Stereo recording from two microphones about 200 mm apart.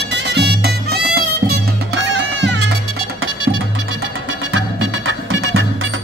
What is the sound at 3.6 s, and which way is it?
Music, 80° right.